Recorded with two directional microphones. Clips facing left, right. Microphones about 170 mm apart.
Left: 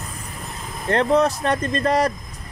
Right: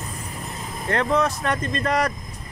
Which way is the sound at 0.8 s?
30° left (ahead or behind).